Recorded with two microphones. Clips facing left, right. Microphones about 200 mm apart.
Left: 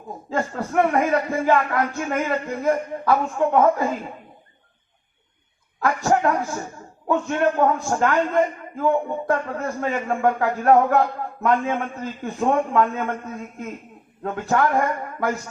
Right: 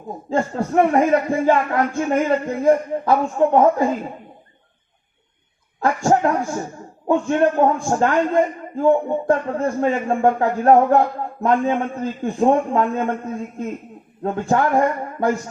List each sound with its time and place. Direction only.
0.3 s a man's voice: 25° right (ahead or behind)
6.1 s a man's voice: 30° right (ahead or behind)